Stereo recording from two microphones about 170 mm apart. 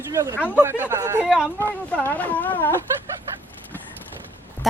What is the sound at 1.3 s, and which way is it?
Speech, 5° right (ahead or behind).